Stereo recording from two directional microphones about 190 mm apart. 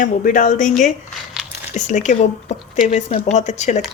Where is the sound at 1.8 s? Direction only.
40° left (ahead or behind).